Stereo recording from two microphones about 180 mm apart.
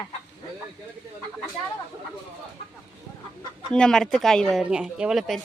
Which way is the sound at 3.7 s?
5° left (ahead or behind).